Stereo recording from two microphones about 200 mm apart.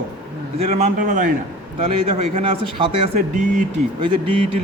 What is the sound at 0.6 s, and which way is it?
Speech, 30° right (ahead or behind).